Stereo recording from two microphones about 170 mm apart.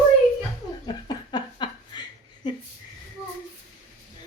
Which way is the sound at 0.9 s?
25° left (ahead or behind).